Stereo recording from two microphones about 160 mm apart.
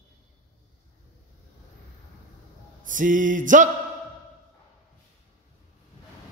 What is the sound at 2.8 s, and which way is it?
Music, 55° right (ahead or behind).